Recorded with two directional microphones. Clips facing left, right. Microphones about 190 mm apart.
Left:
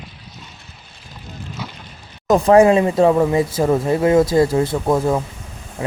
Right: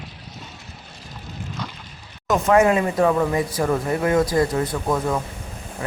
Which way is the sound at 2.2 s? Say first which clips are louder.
Left 5 dB; 35° left (ahead or behind).